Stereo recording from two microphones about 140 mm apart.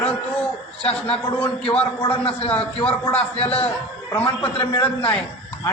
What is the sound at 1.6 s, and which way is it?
Speech, 40° left (ahead or behind).